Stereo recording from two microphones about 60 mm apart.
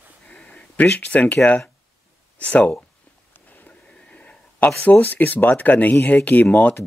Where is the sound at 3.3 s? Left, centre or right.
Left.